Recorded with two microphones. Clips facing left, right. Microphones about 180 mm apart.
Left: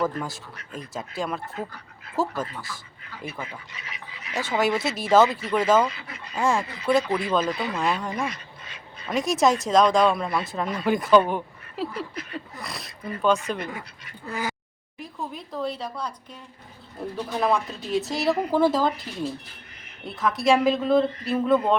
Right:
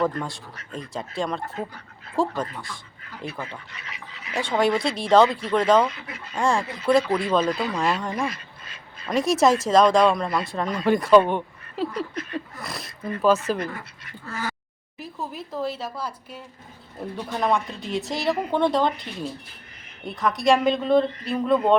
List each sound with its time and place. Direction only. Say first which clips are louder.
0.0 s speech: right 2 dB; 5° left (ahead or behind)
14.3 s a sound: left 1 dB; 15° left (ahead or behind)
14.9 s speech: right 1 dB; centre (ahead or behind)
20.1 s speech: right 1 dB; centre (ahead or behind)